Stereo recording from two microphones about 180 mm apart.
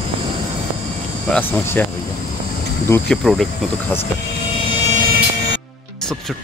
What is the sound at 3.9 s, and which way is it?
Speech, 15° left (ahead or behind).